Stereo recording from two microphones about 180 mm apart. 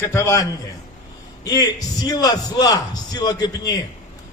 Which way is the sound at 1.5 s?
20° left (ahead or behind).